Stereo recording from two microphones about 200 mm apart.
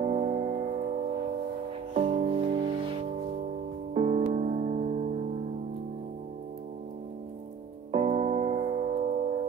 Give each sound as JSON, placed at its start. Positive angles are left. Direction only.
{"t": 0.0, "sound": "music", "side_deg": -35}
{"t": 2.0, "sound": "music", "side_deg": -45}
{"t": 2.3, "sound": "music", "side_deg": -25}
{"t": 7.9, "sound": "music", "side_deg": -35}